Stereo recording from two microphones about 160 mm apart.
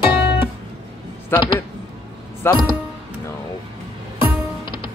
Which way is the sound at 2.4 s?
15° left (ahead or behind).